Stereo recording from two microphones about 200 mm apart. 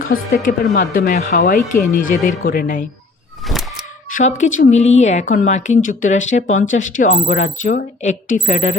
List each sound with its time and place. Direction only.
0.0 s speech: 45° left (ahead or behind)
3.4 s a sound: centre (ahead or behind)
4.1 s speech: 35° left (ahead or behind)